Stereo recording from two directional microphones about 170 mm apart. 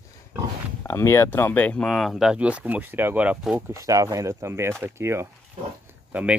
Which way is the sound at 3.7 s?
20° right (ahead or behind).